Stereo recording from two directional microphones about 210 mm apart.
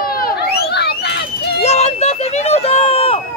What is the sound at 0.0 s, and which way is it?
Run, 45° left (ahead or behind).